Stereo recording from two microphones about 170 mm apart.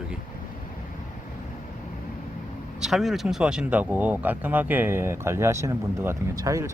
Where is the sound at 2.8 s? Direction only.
Centre (ahead or behind).